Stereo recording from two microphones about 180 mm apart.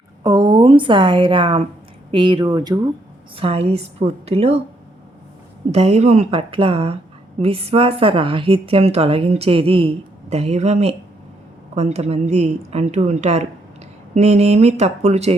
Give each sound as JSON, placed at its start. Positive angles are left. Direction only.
{"t": 0.2, "sound": "a woman's voice", "side_deg": -20}
{"t": 5.7, "sound": "a woman's voice", "side_deg": -35}